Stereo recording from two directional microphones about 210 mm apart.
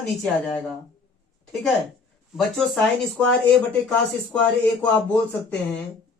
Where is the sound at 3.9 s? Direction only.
5° left (ahead or behind).